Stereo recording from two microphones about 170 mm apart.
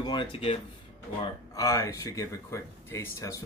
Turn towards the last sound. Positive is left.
turn(degrees=15)  # may be behind; listen again after turning